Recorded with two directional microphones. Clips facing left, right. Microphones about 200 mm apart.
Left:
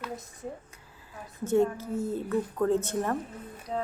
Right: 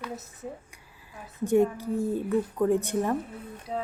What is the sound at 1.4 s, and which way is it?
A woman's voice, 15° right (ahead or behind).